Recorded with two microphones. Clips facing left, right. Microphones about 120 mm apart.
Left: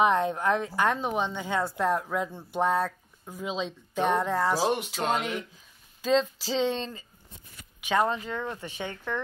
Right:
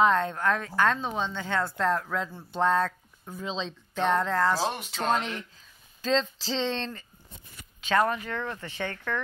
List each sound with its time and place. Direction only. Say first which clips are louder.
0.0 s speech: even; 15° left (ahead or behind)